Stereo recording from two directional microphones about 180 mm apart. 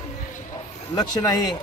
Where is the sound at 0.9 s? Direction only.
20° left (ahead or behind).